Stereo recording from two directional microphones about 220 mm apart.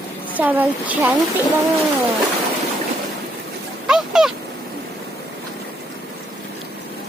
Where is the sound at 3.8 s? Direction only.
Centre (ahead or behind).